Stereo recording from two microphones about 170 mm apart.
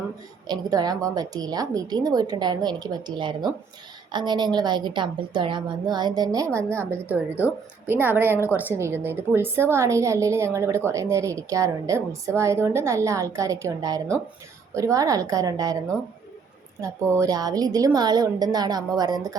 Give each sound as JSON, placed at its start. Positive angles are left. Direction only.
{"t": 0.4, "sound": "a woman's voice", "side_deg": -25}
{"t": 7.9, "sound": "a woman's voice", "side_deg": -10}